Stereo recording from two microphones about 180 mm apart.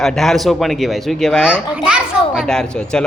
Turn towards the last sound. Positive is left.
turn(degrees=5)  # may be behind; listen again after turning